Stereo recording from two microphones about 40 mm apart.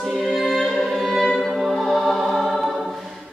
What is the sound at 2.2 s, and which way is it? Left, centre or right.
Organ, centre.